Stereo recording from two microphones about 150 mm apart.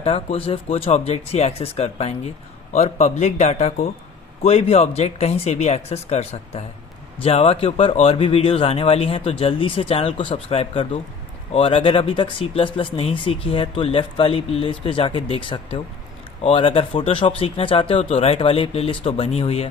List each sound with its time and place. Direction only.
0.0 s speech: 40° left (ahead or behind)